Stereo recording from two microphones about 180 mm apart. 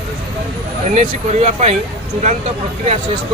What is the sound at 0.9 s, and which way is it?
Speech, 40° right (ahead or behind).